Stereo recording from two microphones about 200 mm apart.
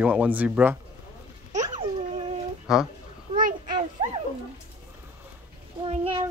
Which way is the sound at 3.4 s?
45° right (ahead or behind).